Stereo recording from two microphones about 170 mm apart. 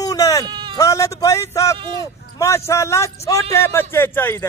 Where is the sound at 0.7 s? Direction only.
20° left (ahead or behind).